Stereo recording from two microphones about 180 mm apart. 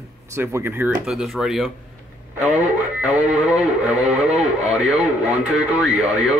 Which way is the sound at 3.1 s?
5° right (ahead or behind).